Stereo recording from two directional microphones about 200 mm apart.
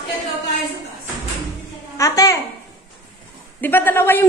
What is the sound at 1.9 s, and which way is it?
Speech, 15° left (ahead or behind).